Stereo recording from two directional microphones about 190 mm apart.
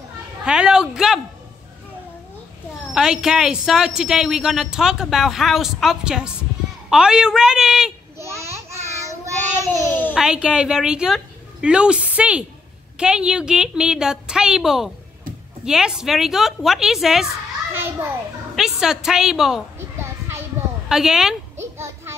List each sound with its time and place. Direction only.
0.5 s a woman's voice: 5° right (ahead or behind)
2.9 s a woman's voice: 5° right (ahead or behind)
8.2 s a sound: 15° right (ahead or behind)
8.9 s child singing: 15° right (ahead or behind)
10.1 s a woman's voice: 5° right (ahead or behind)
18.6 s a woman's voice: 5° right (ahead or behind)
19.8 s children playing: 15° right (ahead or behind)
20.9 s a woman's voice: 5° right (ahead or behind)
21.7 s child singing: 15° right (ahead or behind)